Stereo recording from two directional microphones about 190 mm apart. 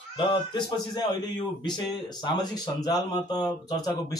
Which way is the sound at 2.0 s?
20° left (ahead or behind).